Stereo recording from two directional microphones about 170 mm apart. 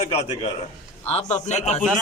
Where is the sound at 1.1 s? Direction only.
40° left (ahead or behind).